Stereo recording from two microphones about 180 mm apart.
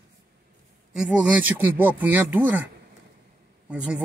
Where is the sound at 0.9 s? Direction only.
5° right (ahead or behind).